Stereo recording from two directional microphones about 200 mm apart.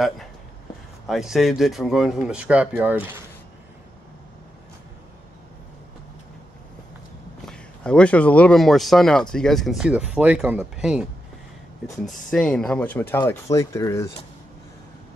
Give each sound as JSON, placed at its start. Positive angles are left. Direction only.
{"t": 1.0, "sound": "speech", "side_deg": 0}
{"t": 7.4, "sound": "speech", "side_deg": 5}
{"t": 12.3, "sound": "speech", "side_deg": 5}